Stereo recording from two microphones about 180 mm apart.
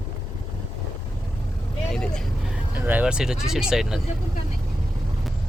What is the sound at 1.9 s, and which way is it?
Speech, 5° left (ahead or behind).